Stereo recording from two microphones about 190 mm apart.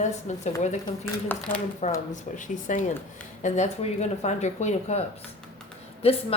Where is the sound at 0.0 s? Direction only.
40° left (ahead or behind).